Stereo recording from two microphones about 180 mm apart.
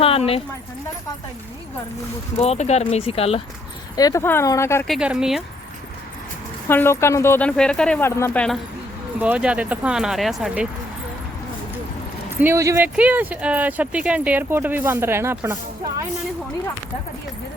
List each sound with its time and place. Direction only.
0.0 s speech: 30° left (ahead or behind)
2.4 s speech: 35° left (ahead or behind)
3.9 s speech: 20° left (ahead or behind)
4.9 s speech: 5° right (ahead or behind)
6.7 s speech: 15° left (ahead or behind)
9.2 s speech: 5° right (ahead or behind)
12.4 s speech: 15° right (ahead or behind)